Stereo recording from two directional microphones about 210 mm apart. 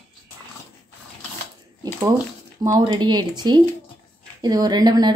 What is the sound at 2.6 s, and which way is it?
Speech, 15° right (ahead or behind).